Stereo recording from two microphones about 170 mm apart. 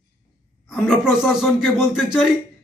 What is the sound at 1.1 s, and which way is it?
Speech, 5° right (ahead or behind).